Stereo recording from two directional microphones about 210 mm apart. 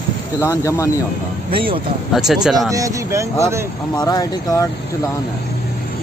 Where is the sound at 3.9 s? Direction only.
20° left (ahead or behind).